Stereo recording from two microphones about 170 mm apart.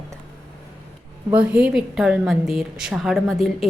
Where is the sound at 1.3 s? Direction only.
10° right (ahead or behind).